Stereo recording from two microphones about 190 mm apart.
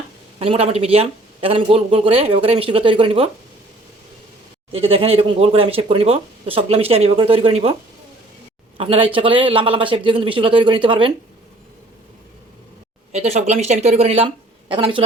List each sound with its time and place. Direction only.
0.3 s speech: 30° right (ahead or behind)
4.7 s speech: 30° right (ahead or behind)
8.8 s speech: 30° right (ahead or behind)
13.1 s speech: 35° right (ahead or behind)